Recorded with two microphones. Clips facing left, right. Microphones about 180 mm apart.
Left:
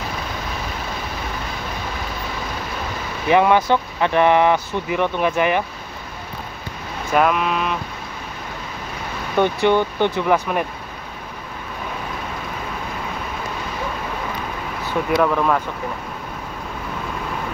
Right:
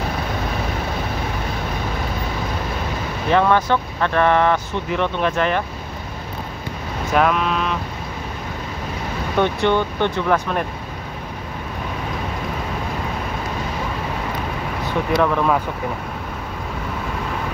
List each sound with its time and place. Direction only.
3.3 s speech: 10° left (ahead or behind)
7.1 s vehicle: 5° left (ahead or behind)
9.4 s speech: 10° left (ahead or behind)
15.1 s vehicle: 5° left (ahead or behind)